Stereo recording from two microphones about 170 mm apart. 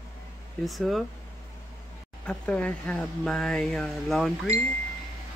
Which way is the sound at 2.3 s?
10° left (ahead or behind).